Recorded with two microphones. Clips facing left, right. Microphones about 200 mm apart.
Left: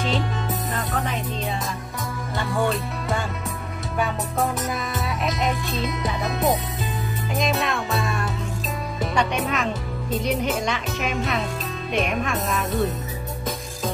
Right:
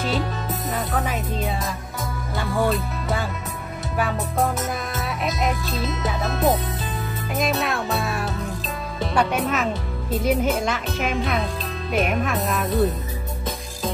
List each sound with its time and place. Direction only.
0.0 s music: centre (ahead or behind)
2.3 s speech: centre (ahead or behind)
4.9 s music: centre (ahead or behind)
6.0 s speech: centre (ahead or behind)